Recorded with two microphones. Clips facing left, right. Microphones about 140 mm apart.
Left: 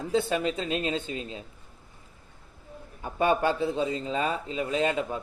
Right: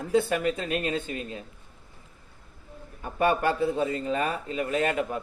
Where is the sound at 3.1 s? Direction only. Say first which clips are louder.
Even; 20° left (ahead or behind).